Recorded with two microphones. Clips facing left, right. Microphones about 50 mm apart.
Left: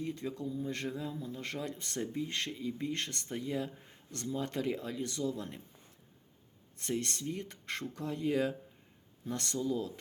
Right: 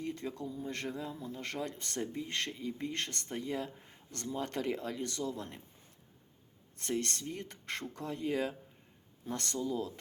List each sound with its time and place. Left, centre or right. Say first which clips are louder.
0.0 s speech: left 1 dB; right
6.7 s speech: even; right